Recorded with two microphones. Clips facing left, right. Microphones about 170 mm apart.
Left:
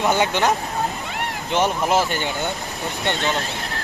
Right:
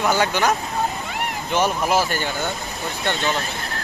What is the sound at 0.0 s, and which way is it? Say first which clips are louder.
Speech: left 1 dB; 20° left (ahead or behind).